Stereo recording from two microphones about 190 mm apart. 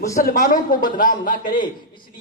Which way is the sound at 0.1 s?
45° left (ahead or behind).